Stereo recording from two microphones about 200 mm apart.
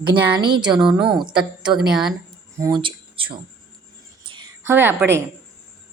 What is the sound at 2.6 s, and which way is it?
Speech, 25° right (ahead or behind).